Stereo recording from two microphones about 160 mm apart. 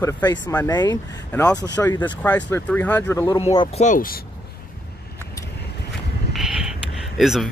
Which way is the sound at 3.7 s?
45° left (ahead or behind).